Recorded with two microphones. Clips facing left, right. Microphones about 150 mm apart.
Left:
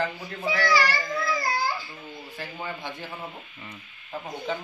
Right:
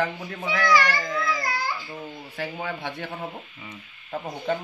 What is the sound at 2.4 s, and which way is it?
Speech, 65° right (ahead or behind).